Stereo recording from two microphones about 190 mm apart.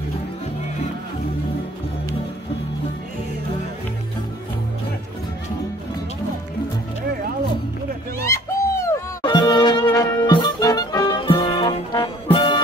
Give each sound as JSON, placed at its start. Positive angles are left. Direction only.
{"t": 8.3, "sound": "bird", "side_deg": 15}
{"t": 9.2, "sound": "music", "side_deg": 25}